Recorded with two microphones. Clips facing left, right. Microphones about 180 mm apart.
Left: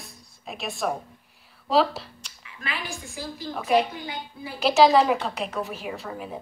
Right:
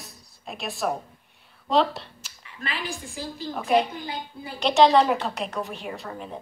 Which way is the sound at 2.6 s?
35° right (ahead or behind).